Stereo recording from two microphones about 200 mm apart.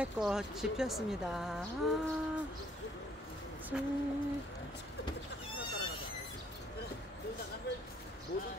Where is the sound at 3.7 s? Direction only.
5° right (ahead or behind).